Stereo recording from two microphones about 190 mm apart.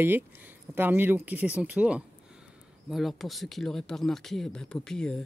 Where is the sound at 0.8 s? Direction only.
10° right (ahead or behind).